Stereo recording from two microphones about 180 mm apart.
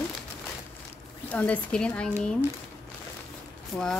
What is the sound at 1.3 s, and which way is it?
Speech, 10° left (ahead or behind).